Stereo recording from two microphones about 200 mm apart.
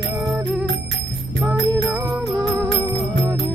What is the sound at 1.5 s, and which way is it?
Music, 15° right (ahead or behind).